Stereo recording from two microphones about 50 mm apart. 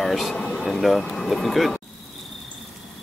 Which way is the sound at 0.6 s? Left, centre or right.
Centre.